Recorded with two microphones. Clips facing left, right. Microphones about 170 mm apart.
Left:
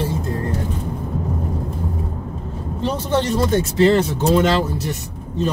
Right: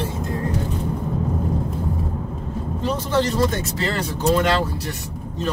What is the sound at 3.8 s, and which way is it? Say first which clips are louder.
Speech: left 10 dB; 25° left (ahead or behind).